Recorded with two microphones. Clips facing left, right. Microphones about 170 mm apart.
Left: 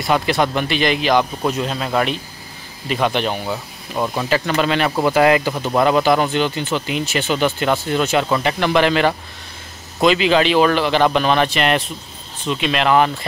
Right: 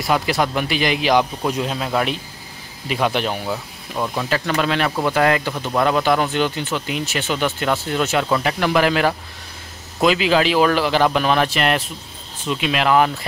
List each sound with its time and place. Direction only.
0.0 s speech: 5° right (ahead or behind)